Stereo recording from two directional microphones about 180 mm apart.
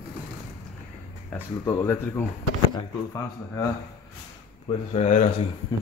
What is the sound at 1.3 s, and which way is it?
Speech, 15° left (ahead or behind).